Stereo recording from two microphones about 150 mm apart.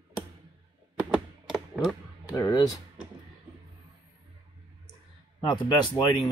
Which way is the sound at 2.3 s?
25° left (ahead or behind).